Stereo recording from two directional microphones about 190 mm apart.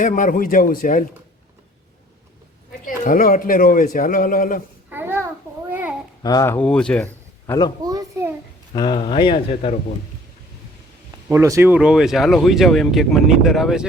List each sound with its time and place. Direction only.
0.0 s a man's voice: 45° left (ahead or behind)
2.8 s a man's voice: 45° left (ahead or behind)
4.9 s babbling: 10° right (ahead or behind)
6.2 s a man's voice: 15° left (ahead or behind)
7.9 s a child's voice: 15° right (ahead or behind)
8.7 s speech: 25° left (ahead or behind)
11.3 s speech: 15° right (ahead or behind)